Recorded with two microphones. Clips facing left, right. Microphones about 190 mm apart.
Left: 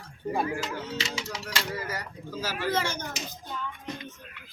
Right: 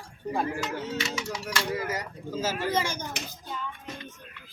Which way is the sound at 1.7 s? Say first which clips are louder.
Right 3 dB; 20° right (ahead or behind).